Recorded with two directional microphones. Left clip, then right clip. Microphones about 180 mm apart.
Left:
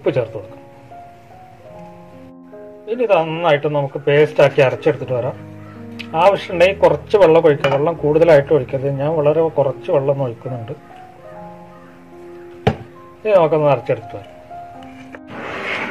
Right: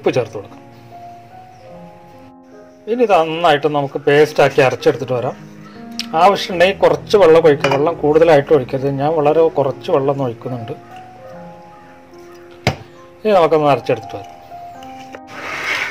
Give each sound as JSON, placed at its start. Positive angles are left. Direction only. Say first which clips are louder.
{"t": 0.0, "sound": "speech", "louder": "right 2 dB", "side_deg": -45}
{"t": 2.9, "sound": "speech", "louder": "right 2 dB", "side_deg": -45}
{"t": 13.2, "sound": "speech", "louder": "right 1 dB", "side_deg": -50}